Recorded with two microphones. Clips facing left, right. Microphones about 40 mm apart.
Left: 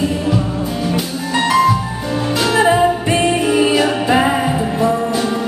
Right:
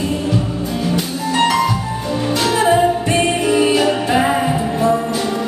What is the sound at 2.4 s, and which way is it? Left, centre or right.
Music, centre.